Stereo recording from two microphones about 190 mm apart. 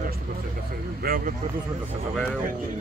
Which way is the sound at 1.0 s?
50° right (ahead or behind).